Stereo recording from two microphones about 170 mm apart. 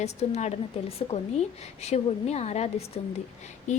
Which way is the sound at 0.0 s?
40° left (ahead or behind).